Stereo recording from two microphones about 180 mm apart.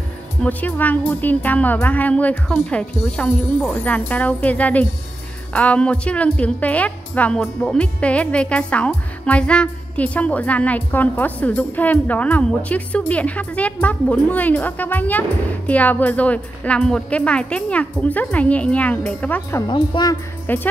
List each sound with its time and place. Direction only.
0.4 s a woman's voice: 10° left (ahead or behind)
19.6 s speech: 25° left (ahead or behind)
20.4 s speech: 10° left (ahead or behind)